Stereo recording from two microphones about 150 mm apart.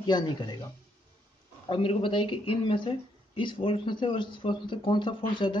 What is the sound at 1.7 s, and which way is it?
Speech, 35° left (ahead or behind).